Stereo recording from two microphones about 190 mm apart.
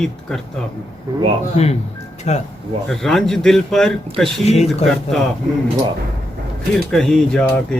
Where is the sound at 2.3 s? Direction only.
35° left (ahead or behind).